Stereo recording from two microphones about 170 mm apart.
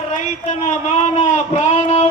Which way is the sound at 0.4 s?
40° left (ahead or behind).